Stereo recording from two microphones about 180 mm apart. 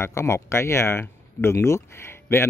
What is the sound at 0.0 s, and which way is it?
Speech, 15° left (ahead or behind).